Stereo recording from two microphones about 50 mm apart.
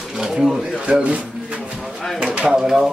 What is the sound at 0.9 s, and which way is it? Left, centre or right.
Speech, right.